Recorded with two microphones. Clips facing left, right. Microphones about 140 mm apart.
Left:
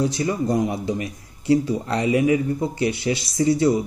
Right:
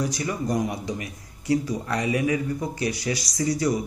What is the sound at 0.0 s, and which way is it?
A man's voice, 25° left (ahead or behind).